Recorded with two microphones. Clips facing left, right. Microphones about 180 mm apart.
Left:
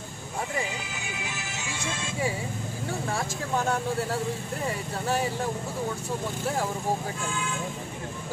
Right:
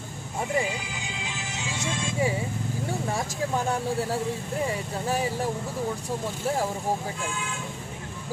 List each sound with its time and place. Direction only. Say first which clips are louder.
0.6 s music: right 4 dB; 15° right (ahead or behind)